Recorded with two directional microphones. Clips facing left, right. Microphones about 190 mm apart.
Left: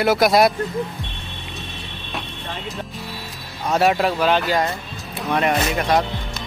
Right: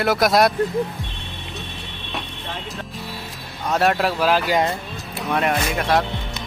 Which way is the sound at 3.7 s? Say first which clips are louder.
Left 1 dB; centre (ahead or behind).